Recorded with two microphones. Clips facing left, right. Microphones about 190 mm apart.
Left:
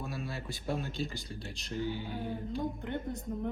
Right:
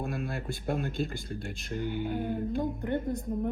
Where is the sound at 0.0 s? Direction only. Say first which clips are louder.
Right 5 dB; 55° right (ahead or behind).